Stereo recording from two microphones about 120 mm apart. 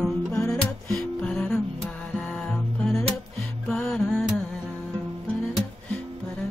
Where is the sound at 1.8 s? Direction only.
Centre (ahead or behind).